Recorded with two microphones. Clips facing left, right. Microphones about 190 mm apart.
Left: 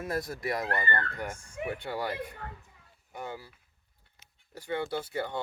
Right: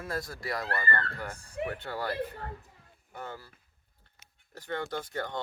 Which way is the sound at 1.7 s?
15° left (ahead or behind).